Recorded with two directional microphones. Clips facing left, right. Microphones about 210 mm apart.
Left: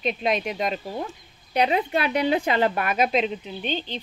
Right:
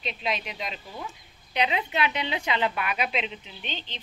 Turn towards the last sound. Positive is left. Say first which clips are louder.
# left 10 dB
turn(degrees=40)  # may be behind; listen again after turning